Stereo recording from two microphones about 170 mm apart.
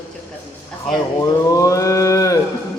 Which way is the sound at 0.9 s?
20° left (ahead or behind).